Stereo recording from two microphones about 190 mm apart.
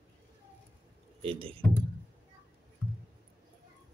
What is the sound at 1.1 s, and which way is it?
Speech, 30° right (ahead or behind).